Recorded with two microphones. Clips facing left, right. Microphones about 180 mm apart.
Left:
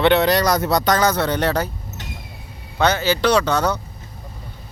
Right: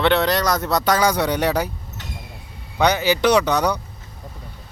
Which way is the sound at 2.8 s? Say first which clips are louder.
Even; 15° right (ahead or behind).